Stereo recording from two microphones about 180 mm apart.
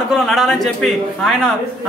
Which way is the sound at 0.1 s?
Centre (ahead or behind).